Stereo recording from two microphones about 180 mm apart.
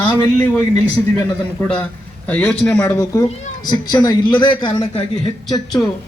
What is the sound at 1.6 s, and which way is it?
A man's voice, 5° left (ahead or behind).